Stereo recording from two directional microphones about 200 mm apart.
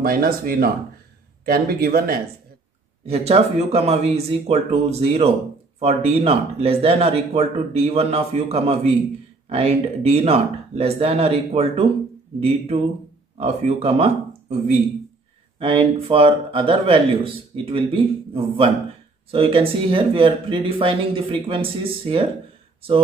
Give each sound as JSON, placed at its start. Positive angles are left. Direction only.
{"t": 0.0, "sound": "speech", "side_deg": -45}
{"t": 3.1, "sound": "speech", "side_deg": -30}